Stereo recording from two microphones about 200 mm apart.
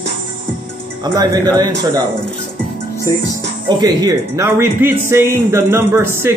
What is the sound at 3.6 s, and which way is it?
A man's voice, 20° right (ahead or behind).